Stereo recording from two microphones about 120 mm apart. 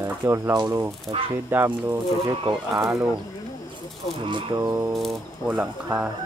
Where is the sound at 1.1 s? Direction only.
35° right (ahead or behind).